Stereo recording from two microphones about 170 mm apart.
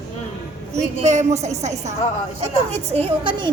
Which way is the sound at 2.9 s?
35° right (ahead or behind).